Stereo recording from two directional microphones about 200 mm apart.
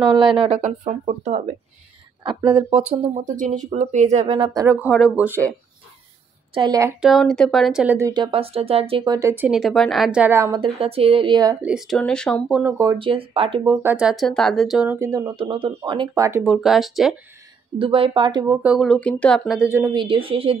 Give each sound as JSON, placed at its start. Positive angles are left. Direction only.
{"t": 0.0, "sound": "speech", "side_deg": -20}
{"t": 2.2, "sound": "speech", "side_deg": -20}
{"t": 2.9, "sound": "speech", "side_deg": -35}
{"t": 4.6, "sound": "speech", "side_deg": -5}
{"t": 6.5, "sound": "speech", "side_deg": -20}
{"t": 7.0, "sound": "speech", "side_deg": 0}
{"t": 8.1, "sound": "speech", "side_deg": -25}
{"t": 11.6, "sound": "speech", "side_deg": 0}
{"t": 12.7, "sound": "speech", "side_deg": -15}
{"t": 13.1, "sound": "speech", "side_deg": -25}
{"t": 13.8, "sound": "speech", "side_deg": -5}
{"t": 16.3, "sound": "speech", "side_deg": -10}
{"t": 17.7, "sound": "speech", "side_deg": -25}